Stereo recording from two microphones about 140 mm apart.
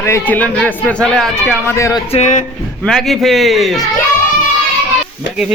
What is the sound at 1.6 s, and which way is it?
Speech, 20° left (ahead or behind).